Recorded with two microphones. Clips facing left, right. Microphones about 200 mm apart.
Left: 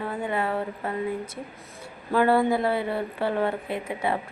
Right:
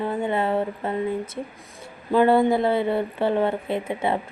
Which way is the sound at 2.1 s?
20° right (ahead or behind).